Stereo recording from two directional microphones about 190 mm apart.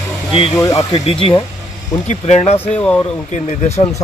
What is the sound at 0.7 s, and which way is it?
A man's voice, 30° left (ahead or behind).